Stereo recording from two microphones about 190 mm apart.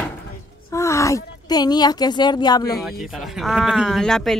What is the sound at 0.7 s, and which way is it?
Speech, 15° left (ahead or behind).